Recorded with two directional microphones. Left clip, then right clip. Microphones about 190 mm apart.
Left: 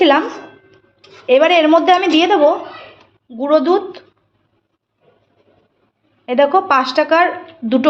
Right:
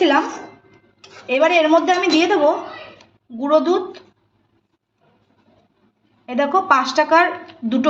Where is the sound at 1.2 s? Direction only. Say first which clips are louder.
Left 4 dB; 35° left (ahead or behind).